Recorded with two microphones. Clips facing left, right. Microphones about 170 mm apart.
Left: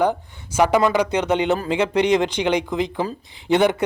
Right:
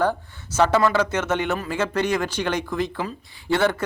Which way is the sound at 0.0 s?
15° left (ahead or behind).